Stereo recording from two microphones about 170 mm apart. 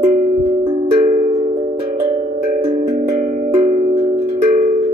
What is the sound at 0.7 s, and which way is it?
Music, 35° right (ahead or behind).